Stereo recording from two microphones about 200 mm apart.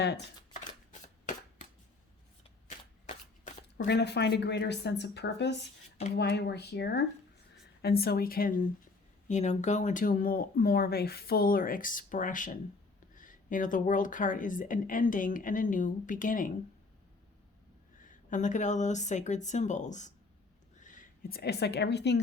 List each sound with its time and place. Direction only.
2.6 s shuffling cards: 35° left (ahead or behind)
3.8 s speech: 55° left (ahead or behind); by 16.5 s 40° left (ahead or behind)
18.3 s speech: 40° left (ahead or behind); by 22.2 s 55° left (ahead or behind)